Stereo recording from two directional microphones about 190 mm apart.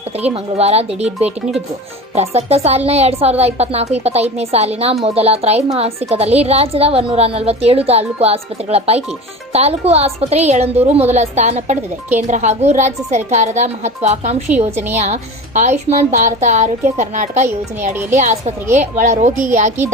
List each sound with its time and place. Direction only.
0.3 s a woman's voice: 35° right (ahead or behind)